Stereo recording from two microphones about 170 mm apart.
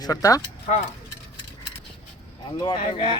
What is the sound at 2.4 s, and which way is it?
Speech, 30° left (ahead or behind).